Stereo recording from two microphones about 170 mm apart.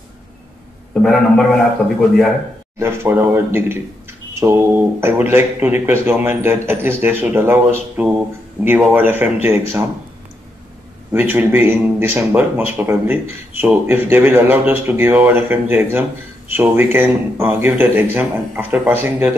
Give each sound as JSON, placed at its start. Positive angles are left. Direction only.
{"t": 1.0, "sound": "a man's voice", "side_deg": 5}
{"t": 2.8, "sound": "speech", "side_deg": -15}
{"t": 11.1, "sound": "speech", "side_deg": -10}